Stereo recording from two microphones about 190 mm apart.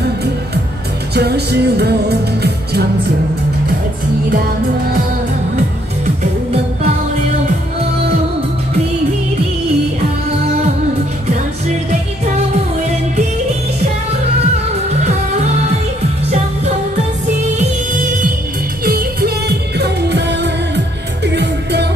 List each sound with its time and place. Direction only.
1.1 s music: 60° right (ahead or behind)
14.9 s music: 35° right (ahead or behind)
16.3 s music: 35° right (ahead or behind); by 19.3 s 50° right (ahead or behind)
19.8 s music: 65° right (ahead or behind)